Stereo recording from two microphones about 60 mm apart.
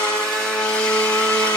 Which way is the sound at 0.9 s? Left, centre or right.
Left.